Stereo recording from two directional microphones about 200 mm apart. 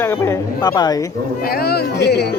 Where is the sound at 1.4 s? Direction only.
50° left (ahead or behind).